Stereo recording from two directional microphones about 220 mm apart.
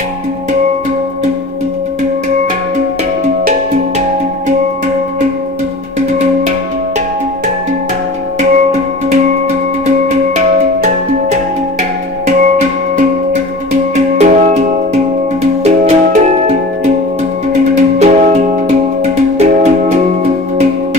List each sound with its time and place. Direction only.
10.0 s music: 35° right (ahead or behind)
15.6 s music: 30° right (ahead or behind)
17.9 s music: 30° right (ahead or behind)